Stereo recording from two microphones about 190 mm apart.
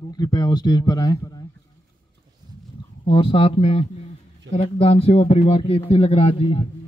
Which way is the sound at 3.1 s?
30° left (ahead or behind).